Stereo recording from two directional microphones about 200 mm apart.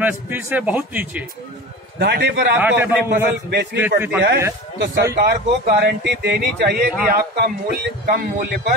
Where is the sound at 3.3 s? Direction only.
55° right (ahead or behind).